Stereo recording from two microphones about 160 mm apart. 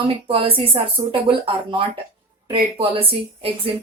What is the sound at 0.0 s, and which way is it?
Speech, 35° right (ahead or behind).